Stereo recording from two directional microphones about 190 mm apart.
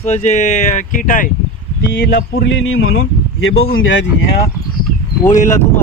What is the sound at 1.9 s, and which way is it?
Speech, 55° left (ahead or behind).